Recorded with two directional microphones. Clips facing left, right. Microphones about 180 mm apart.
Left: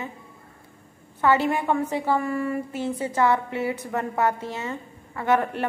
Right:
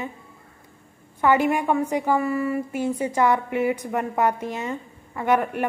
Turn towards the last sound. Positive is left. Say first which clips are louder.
# right 1 dB
turn(degrees=-15)  # may be behind; listen again after turning